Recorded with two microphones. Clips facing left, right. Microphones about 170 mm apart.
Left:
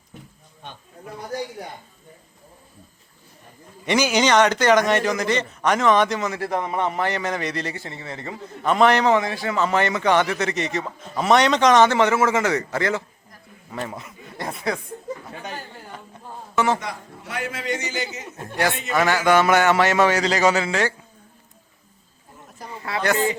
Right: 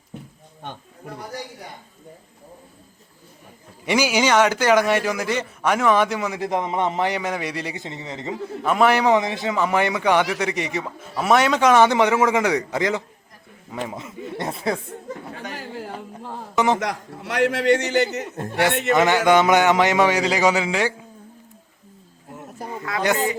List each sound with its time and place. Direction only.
3.8 s a man's voice: 10° right (ahead or behind)
8.6 s a man's voice: 5° right (ahead or behind)
14.0 s speech: 25° right (ahead or behind)
15.5 s a sound: 90° right
16.0 s speech: 85° right
16.6 s a man's voice: 15° right (ahead or behind)
16.8 s a man's voice: 85° right; by 18.3 s 65° right (ahead or behind)
18.9 s a man's voice: 20° right (ahead or behind)
23.0 s speech: 20° right (ahead or behind)